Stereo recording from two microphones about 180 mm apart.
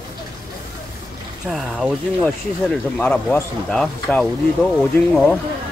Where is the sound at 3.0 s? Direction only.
10° left (ahead or behind).